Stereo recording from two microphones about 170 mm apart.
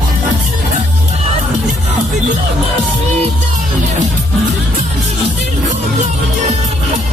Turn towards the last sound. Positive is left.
turn(degrees=-45)  # may be behind; listen again after turning